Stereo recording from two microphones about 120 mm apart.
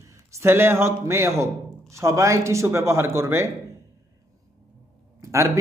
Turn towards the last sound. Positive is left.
turn(degrees=-25)  # may be behind; listen again after turning